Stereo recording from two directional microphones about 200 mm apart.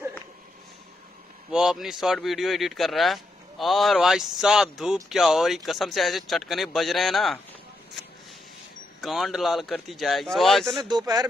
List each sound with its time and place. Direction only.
1.5 s speech: 5° right (ahead or behind)
9.0 s speech: centre (ahead or behind)
10.8 s speech: 20° right (ahead or behind)